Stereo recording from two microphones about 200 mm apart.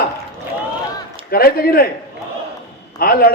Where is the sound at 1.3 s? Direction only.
50° left (ahead or behind).